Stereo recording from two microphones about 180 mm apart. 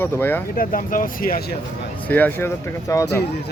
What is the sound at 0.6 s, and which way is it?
Speech, 50° left (ahead or behind).